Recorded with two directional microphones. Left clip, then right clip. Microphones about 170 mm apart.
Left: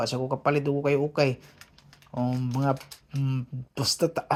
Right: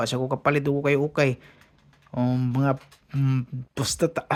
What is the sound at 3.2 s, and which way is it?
Speech, 40° right (ahead or behind).